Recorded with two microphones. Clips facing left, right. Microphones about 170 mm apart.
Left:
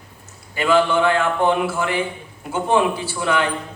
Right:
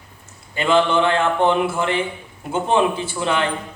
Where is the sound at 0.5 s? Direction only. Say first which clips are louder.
Even; 25° right (ahead or behind).